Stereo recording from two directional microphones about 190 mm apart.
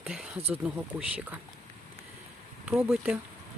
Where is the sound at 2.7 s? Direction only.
Centre (ahead or behind).